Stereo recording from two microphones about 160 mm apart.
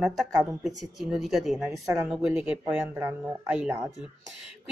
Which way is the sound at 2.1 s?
5° right (ahead or behind).